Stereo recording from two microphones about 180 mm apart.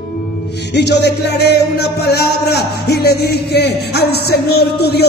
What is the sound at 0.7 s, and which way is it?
Speech, 70° left (ahead or behind).